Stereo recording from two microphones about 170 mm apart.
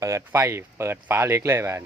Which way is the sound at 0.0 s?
15° right (ahead or behind).